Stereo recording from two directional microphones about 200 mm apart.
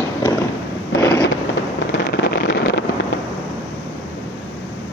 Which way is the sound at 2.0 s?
55° left (ahead or behind).